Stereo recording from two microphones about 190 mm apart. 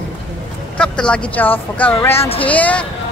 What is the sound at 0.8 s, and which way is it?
A woman's voice, 5° left (ahead or behind).